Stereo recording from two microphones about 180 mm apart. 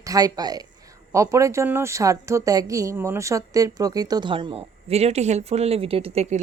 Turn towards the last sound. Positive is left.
turn(degrees=-35)  # may be behind; listen again after turning